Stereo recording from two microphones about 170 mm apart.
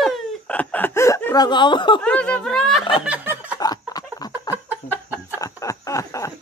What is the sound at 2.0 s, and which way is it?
Speech, 5° left (ahead or behind).